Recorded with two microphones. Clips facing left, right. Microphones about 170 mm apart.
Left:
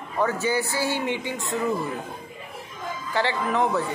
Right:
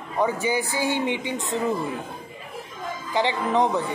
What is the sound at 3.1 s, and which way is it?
Speech, 15° right (ahead or behind).